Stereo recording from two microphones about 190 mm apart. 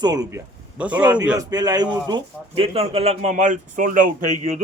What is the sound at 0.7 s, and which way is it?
Mantra, 5° right (ahead or behind).